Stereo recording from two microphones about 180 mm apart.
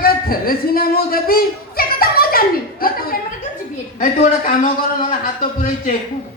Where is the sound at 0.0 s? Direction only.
55° left (ahead or behind).